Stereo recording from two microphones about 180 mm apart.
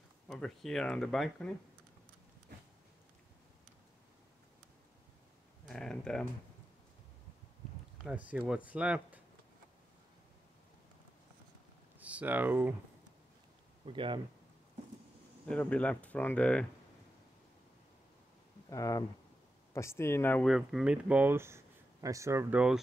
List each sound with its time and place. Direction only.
0.3 s speech: centre (ahead or behind)
5.7 s speech: 5° left (ahead or behind)
8.0 s speech: 5° right (ahead or behind)
12.0 s speech: 10° right (ahead or behind)
13.8 s speech: 30° right (ahead or behind)
15.4 s speech: 5° left (ahead or behind)
18.7 s speech: 20° left (ahead or behind)
20.5 s speech: 5° right (ahead or behind)